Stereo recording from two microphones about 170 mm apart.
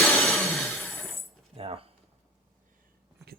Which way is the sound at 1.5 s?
35° right (ahead or behind).